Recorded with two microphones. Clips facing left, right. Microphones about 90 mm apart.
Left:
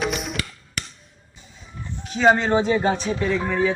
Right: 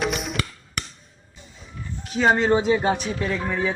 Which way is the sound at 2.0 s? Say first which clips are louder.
Left 2 dB; centre (ahead or behind).